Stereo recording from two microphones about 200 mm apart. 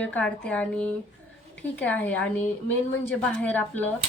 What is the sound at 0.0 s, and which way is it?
A woman's voice, 5° left (ahead or behind).